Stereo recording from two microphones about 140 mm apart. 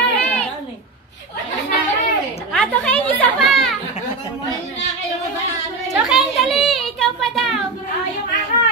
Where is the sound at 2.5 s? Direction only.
10° left (ahead or behind).